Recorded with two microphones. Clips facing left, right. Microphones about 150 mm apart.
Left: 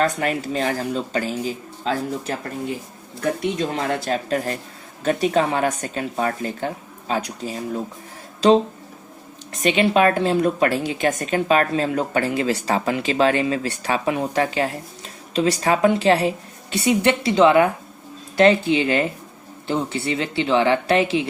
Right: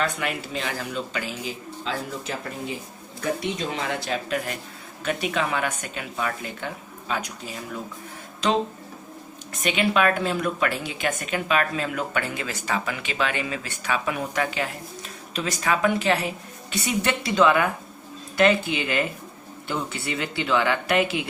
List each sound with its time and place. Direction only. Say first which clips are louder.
0.0 s a woman's voice: left 6 dB; 45° left (ahead or behind)
9.5 s a woman's voice: left 5 dB; 30° left (ahead or behind)